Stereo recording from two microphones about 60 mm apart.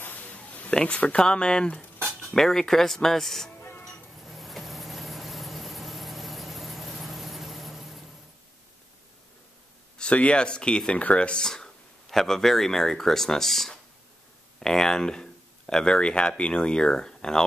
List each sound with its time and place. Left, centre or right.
0.0 s a sound: left
0.7 s speech: centre
2.3 s speech: centre
4.2 s vehicle: centre
9.9 s speech: centre